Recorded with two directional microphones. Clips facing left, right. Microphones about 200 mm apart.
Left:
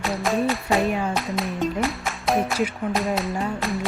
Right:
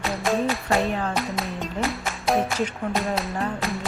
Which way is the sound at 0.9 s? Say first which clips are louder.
Left 2 dB; 10° left (ahead or behind).